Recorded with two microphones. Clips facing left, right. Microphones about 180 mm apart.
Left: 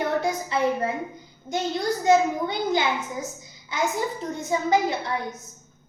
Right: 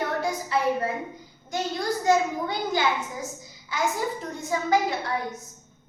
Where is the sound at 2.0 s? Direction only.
20° left (ahead or behind).